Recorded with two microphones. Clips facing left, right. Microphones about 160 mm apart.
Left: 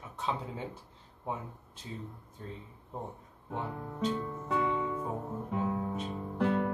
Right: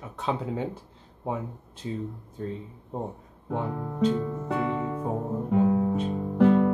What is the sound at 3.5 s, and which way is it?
Speech, 60° right (ahead or behind).